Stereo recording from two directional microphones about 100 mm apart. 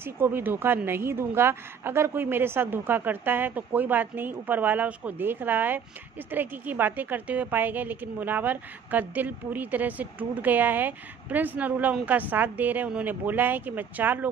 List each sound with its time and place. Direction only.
0.0 s a woman's voice: 20° right (ahead or behind)